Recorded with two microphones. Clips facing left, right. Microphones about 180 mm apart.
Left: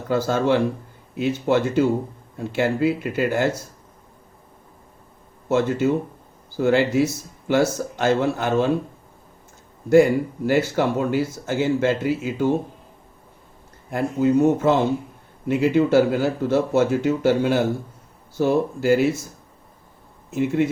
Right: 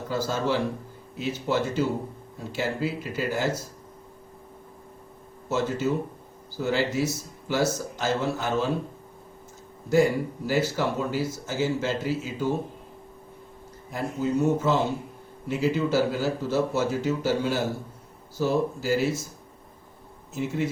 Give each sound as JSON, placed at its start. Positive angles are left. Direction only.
{"t": 0.1, "sound": "speech", "side_deg": 60}
{"t": 5.5, "sound": "speech", "side_deg": 60}
{"t": 9.9, "sound": "speech", "side_deg": 60}
{"t": 13.9, "sound": "speech", "side_deg": 55}
{"t": 20.3, "sound": "speech", "side_deg": 60}